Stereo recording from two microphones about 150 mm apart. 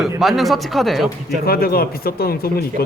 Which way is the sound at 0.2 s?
Centre (ahead or behind).